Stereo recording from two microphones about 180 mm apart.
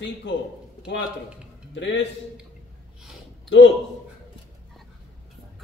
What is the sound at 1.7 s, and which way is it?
Speech, 90° left.